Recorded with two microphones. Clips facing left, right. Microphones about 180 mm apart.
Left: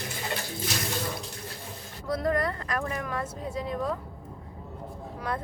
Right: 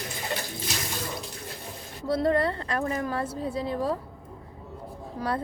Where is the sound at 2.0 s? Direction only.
30° right (ahead or behind).